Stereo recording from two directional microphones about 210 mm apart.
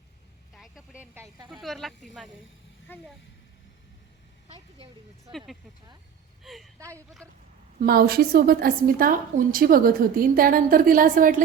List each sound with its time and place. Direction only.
0.5 s vehicle: centre (ahead or behind)
1.6 s speech: centre (ahead or behind)
4.4 s a sound: 30° right (ahead or behind)
6.4 s speech: centre (ahead or behind)
7.8 s a woman's voice: 45° right (ahead or behind)